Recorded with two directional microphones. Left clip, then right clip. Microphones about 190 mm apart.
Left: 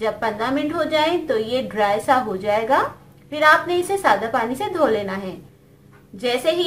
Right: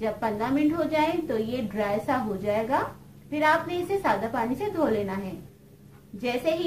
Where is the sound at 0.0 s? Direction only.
30° left (ahead or behind).